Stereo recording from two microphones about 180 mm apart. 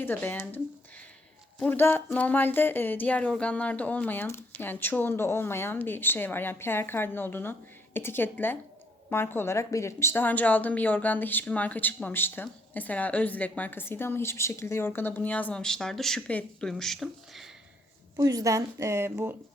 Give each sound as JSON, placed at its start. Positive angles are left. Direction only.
{"t": 0.0, "sound": "speech", "side_deg": 10}
{"t": 18.2, "sound": "a woman's voice", "side_deg": -20}